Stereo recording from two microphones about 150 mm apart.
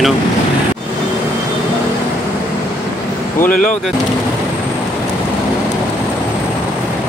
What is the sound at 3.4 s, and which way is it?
Speech, 10° left (ahead or behind).